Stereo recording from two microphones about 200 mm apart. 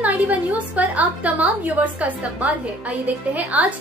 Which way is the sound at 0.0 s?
5° right (ahead or behind).